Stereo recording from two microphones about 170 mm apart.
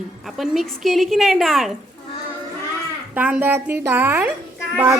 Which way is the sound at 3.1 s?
10° right (ahead or behind).